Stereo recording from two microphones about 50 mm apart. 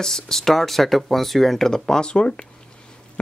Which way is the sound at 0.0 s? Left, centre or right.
Centre.